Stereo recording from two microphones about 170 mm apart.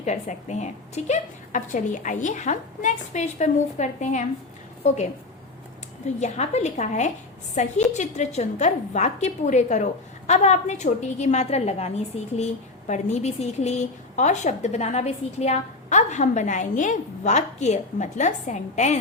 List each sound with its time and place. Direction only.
0.0 s a woman's voice: 45° left (ahead or behind)
6.1 s a woman's voice: 40° left (ahead or behind)